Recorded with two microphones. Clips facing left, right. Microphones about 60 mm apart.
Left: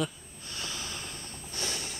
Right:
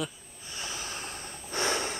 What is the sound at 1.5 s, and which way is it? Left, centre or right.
Snort, right.